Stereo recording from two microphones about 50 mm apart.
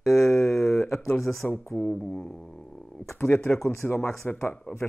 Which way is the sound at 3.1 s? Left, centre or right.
Left.